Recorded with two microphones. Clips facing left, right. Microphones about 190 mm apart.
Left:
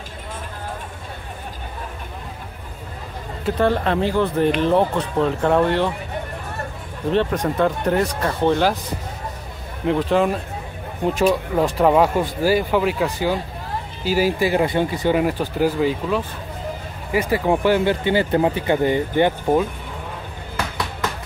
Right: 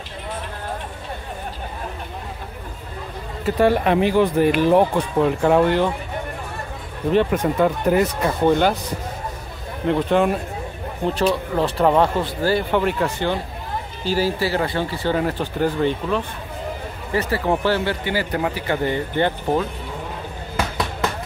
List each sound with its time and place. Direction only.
3.4 s speech: 10° right (ahead or behind)
7.1 s speech: 5° right (ahead or behind)
9.8 s speech: centre (ahead or behind)
11.1 s speech: 10° left (ahead or behind)